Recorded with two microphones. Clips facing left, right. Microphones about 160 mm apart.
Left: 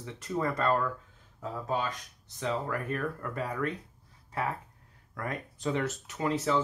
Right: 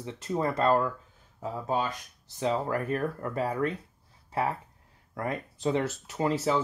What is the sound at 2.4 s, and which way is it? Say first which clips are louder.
Speech: right 4 dB; 35° right (ahead or behind).